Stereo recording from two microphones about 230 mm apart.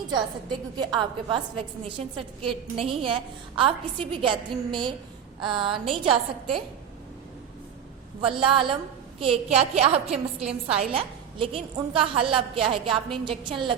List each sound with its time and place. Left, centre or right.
0.8 s a woman's voice: right
8.2 s a woman's voice: right